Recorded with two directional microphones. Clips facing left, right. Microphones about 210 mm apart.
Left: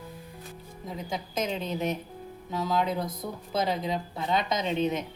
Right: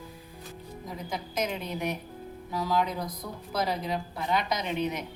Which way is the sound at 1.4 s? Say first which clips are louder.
Left 2 dB; 25° left (ahead or behind).